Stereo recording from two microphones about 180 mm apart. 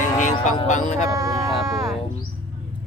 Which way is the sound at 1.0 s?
20° right (ahead or behind).